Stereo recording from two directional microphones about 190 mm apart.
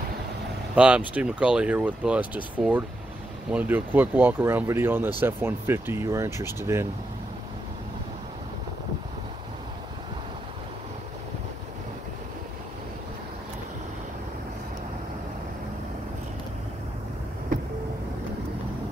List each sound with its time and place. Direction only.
0.7 s speech: 5° right (ahead or behind)